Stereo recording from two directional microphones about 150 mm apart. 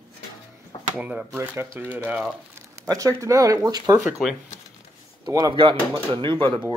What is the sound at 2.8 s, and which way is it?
Speech, 20° right (ahead or behind).